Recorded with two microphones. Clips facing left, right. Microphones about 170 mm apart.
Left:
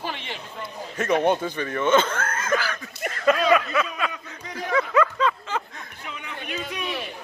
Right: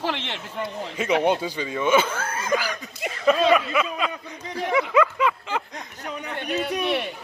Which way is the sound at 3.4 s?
25° right (ahead or behind).